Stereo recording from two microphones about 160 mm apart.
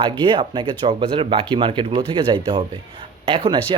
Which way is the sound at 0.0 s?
30° right (ahead or behind).